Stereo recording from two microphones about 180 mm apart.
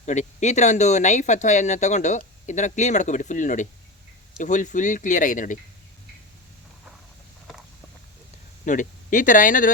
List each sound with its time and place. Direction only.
0.0 s speech: 40° left (ahead or behind)
8.6 s speech: 45° left (ahead or behind)